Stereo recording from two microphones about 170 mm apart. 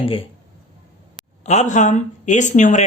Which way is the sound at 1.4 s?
45° left (ahead or behind).